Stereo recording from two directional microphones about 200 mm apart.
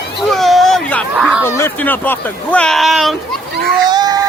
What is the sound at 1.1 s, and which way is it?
Speech, 5° right (ahead or behind).